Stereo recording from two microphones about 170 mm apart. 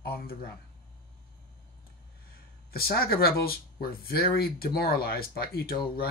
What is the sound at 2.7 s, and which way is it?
Speech, 65° left (ahead or behind).